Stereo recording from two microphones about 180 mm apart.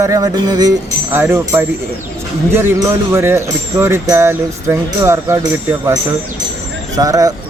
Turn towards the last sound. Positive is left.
turn(degrees=-20)  # may be behind; listen again after turning